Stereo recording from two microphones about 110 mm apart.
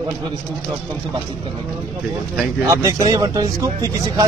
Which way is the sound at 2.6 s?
30° right (ahead or behind).